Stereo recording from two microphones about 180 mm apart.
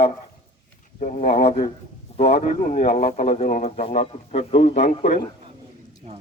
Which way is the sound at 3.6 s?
35° left (ahead or behind).